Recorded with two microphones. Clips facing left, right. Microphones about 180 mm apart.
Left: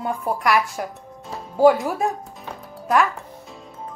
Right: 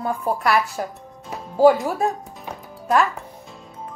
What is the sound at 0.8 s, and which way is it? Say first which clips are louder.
Speech: right 1 dB; 30° right (ahead or behind).